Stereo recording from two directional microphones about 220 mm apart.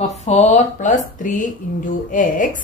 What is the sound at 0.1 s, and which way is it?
A woman's voice, 30° left (ahead or behind).